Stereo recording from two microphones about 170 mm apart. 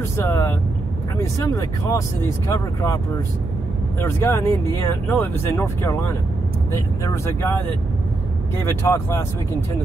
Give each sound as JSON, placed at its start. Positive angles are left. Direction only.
{"t": 0.2, "sound": "speech", "side_deg": 15}
{"t": 4.0, "sound": "speech", "side_deg": 15}
{"t": 8.8, "sound": "speech", "side_deg": 15}